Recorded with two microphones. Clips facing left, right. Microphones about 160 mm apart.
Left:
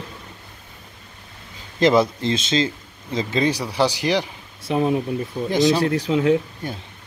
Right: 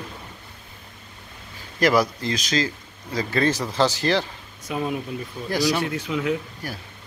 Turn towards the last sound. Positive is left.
turn(degrees=25)  # may be behind; listen again after turning